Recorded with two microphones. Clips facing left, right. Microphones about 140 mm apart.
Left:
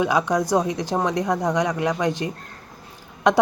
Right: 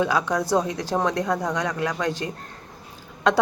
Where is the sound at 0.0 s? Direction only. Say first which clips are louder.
Left 2 dB; 15° left (ahead or behind).